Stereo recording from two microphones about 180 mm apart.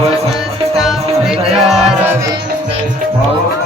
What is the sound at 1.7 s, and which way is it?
Music, 5° right (ahead or behind).